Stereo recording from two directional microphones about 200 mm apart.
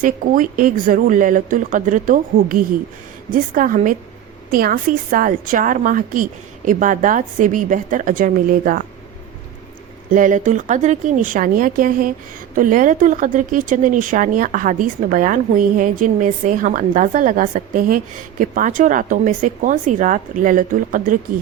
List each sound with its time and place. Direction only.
0.0 s a woman's voice: 45° right (ahead or behind)
10.1 s speech: 40° right (ahead or behind)